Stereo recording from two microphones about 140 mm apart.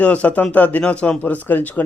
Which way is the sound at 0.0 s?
10° left (ahead or behind).